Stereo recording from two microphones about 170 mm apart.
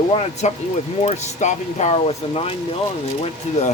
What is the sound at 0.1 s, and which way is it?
Speech, 40° left (ahead or behind).